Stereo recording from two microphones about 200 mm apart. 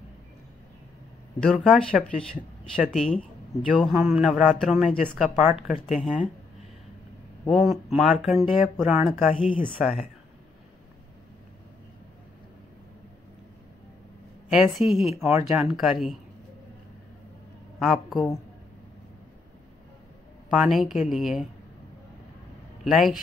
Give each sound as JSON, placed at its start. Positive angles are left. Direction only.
{"t": 1.4, "sound": "speech", "side_deg": 0}
{"t": 7.4, "sound": "speech", "side_deg": 0}
{"t": 14.5, "sound": "speech", "side_deg": 0}
{"t": 17.7, "sound": "speech", "side_deg": 0}
{"t": 20.4, "sound": "speech", "side_deg": 0}
{"t": 22.8, "sound": "speech", "side_deg": 0}